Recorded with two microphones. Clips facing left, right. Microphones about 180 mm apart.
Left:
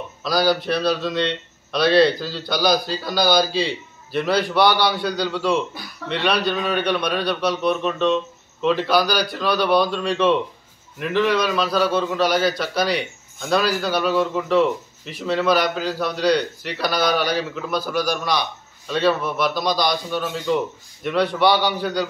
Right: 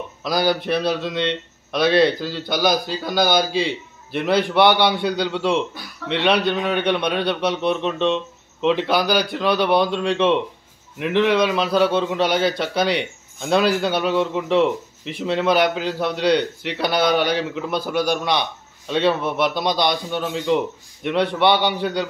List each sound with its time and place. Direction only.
0.2 s a man's voice: 20° right (ahead or behind)